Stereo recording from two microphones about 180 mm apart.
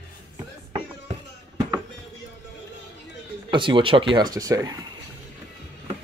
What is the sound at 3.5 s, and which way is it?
Speech, 25° right (ahead or behind).